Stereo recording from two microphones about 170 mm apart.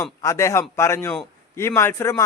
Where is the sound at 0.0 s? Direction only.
15° left (ahead or behind).